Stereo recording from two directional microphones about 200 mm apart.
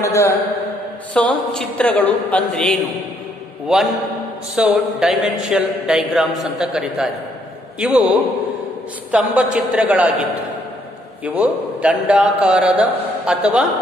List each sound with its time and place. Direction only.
0.0 s mantra: 15° left (ahead or behind)
1.1 s a man's voice: 5° left (ahead or behind)